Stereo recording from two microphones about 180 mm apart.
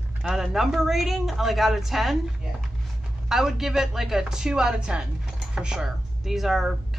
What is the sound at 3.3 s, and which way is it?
Speech, centre (ahead or behind).